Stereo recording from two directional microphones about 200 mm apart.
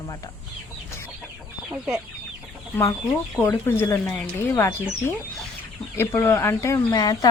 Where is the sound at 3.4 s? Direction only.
10° left (ahead or behind).